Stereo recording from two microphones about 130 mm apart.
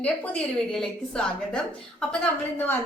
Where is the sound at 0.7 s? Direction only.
5° left (ahead or behind).